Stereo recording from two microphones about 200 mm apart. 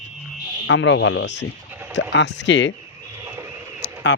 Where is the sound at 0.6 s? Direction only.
70° left (ahead or behind).